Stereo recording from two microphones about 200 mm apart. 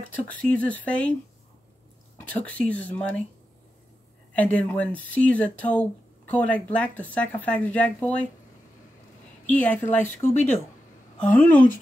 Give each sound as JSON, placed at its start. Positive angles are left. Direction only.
{"t": 0.1, "sound": "speech", "side_deg": 10}
{"t": 2.1, "sound": "speech", "side_deg": 10}
{"t": 4.3, "sound": "speech", "side_deg": 5}
{"t": 9.5, "sound": "speech", "side_deg": 10}
{"t": 10.2, "sound": "speech", "side_deg": 30}
{"t": 11.1, "sound": "speech", "side_deg": 10}